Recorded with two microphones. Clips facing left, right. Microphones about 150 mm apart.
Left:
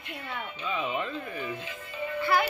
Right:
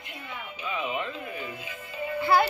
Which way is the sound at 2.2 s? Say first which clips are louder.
Right 4 dB; 30° right (ahead or behind).